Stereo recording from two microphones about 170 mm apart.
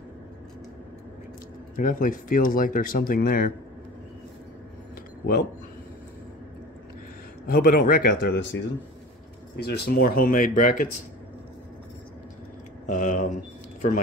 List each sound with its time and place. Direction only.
1.8 s speech: 50° left (ahead or behind)
7.4 s speech: 60° left (ahead or behind); by 8.5 s 90° left
9.6 s speech: 65° left (ahead or behind)
12.8 s speech: 50° left (ahead or behind)